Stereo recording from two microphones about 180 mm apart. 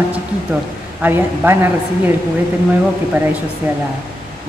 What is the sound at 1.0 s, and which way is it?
Speech, 10° right (ahead or behind).